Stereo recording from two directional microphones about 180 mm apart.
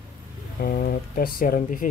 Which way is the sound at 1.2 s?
55° left (ahead or behind).